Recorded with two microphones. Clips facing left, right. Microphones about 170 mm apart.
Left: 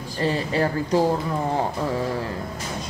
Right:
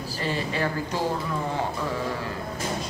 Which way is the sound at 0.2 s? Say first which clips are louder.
Left 6 dB; 40° left (ahead or behind).